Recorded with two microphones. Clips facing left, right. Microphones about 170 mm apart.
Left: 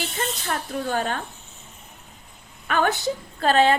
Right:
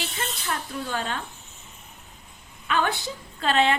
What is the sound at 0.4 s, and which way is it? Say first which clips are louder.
Speech: left 2 dB; 50° left (ahead or behind).